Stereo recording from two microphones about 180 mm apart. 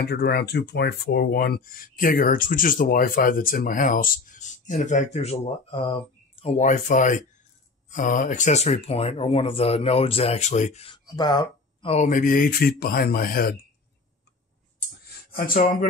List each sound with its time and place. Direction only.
0.0 s speech: 65° left (ahead or behind); by 11.0 s 35° left (ahead or behind)
11.1 s a sound: 20° left (ahead or behind)
11.9 s speech: 45° left (ahead or behind)
15.3 s speech: 50° left (ahead or behind)